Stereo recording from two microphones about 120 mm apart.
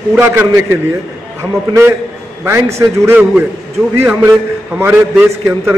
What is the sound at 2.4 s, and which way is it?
Speech, 25° right (ahead or behind).